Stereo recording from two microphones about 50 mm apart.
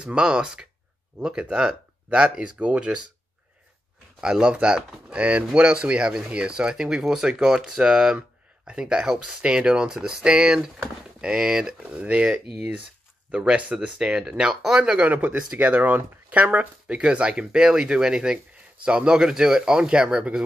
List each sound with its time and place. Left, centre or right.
0.0 s speech: centre
4.2 s speech: centre
15.0 s speech: right; by 20.2 s centre